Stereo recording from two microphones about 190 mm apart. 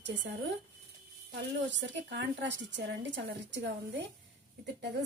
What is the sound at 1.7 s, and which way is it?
Speech, 70° right (ahead or behind).